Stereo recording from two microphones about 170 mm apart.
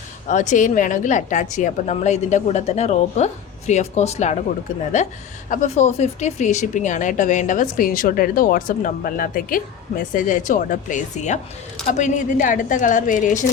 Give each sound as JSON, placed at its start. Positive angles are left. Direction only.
{"t": 0.3, "sound": "speech", "side_deg": 50}
{"t": 5.5, "sound": "speech", "side_deg": 40}